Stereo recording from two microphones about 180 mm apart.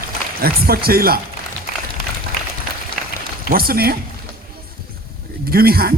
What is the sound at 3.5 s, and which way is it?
Speech, 55° right (ahead or behind).